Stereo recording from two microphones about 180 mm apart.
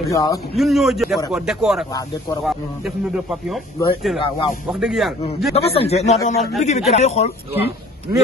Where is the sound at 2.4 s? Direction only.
Centre (ahead or behind).